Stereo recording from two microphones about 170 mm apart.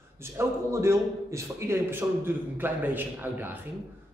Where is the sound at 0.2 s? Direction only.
15° right (ahead or behind).